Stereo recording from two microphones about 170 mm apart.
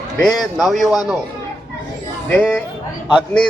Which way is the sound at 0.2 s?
Centre (ahead or behind).